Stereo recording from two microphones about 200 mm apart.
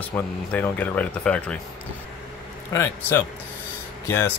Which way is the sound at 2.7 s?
15° left (ahead or behind).